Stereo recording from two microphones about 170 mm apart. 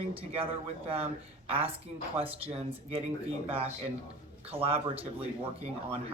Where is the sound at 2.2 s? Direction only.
35° right (ahead or behind).